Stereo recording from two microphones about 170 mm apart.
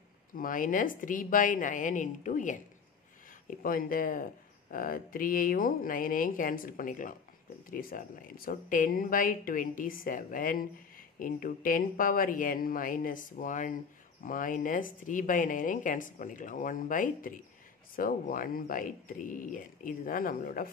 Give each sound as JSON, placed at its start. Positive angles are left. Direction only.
{"t": 0.3, "sound": "speech", "side_deg": 55}